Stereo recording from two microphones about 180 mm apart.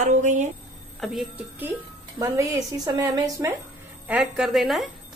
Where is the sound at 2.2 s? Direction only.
20° right (ahead or behind).